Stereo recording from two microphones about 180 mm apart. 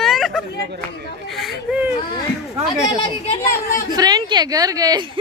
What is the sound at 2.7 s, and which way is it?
Speech, 20° left (ahead or behind).